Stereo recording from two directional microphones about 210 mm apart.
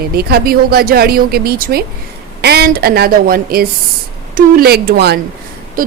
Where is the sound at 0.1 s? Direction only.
50° right (ahead or behind).